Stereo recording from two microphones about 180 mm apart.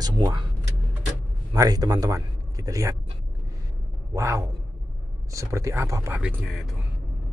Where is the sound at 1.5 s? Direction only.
20° right (ahead or behind).